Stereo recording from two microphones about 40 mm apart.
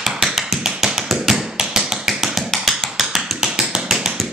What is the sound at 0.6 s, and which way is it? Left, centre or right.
Tap, centre.